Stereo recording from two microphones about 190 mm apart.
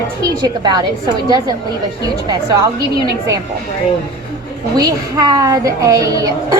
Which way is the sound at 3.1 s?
15° right (ahead or behind).